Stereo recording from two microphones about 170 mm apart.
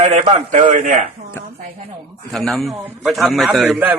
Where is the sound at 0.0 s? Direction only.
45° right (ahead or behind).